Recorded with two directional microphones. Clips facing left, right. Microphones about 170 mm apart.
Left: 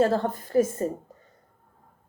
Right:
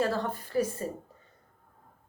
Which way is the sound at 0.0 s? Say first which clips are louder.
Left 6 dB; 50° left (ahead or behind).